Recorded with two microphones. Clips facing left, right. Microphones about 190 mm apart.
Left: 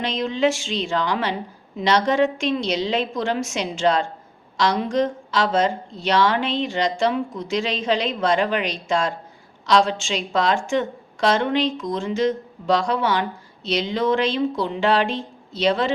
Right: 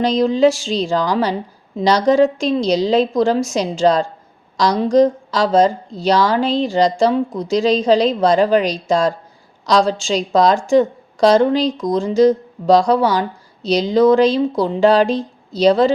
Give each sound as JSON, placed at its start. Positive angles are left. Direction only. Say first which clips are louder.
{"t": 0.0, "sound": "a woman's voice", "louder": "right 8 dB", "side_deg": -35}